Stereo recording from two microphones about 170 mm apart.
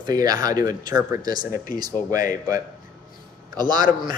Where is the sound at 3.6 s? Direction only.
25° right (ahead or behind).